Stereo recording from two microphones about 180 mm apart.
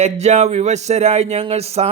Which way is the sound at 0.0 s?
40° right (ahead or behind).